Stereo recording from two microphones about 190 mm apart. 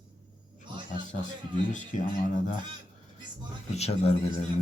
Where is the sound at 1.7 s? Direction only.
40° left (ahead or behind).